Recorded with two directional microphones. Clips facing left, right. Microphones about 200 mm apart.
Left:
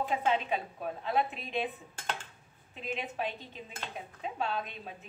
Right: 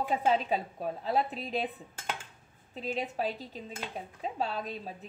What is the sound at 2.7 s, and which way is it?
A woman's voice, 35° right (ahead or behind).